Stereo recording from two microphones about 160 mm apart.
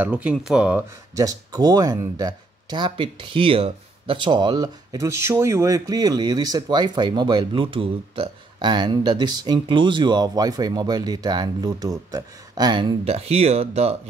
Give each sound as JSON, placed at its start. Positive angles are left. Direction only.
{"t": 0.0, "sound": "speech", "side_deg": -10}
{"t": 1.1, "sound": "speech", "side_deg": -20}